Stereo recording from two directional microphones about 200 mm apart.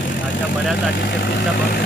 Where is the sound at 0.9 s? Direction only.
55° left (ahead or behind).